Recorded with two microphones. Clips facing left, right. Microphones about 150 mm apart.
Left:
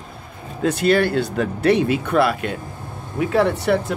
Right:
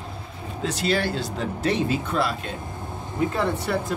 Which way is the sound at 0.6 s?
55° left (ahead or behind).